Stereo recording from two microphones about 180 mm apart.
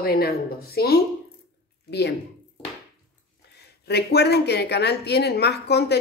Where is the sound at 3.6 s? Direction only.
65° left (ahead or behind).